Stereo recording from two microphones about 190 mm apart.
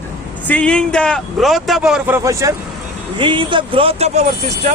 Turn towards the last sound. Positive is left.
turn(degrees=-35)  # may be behind; listen again after turning